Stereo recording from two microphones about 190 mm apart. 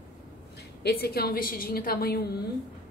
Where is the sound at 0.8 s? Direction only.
55° left (ahead or behind).